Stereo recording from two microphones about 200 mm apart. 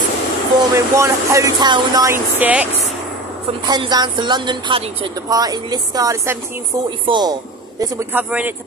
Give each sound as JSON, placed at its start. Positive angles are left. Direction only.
{"t": 0.7, "sound": "speech", "side_deg": -15}
{"t": 3.6, "sound": "a woman's voice", "side_deg": -20}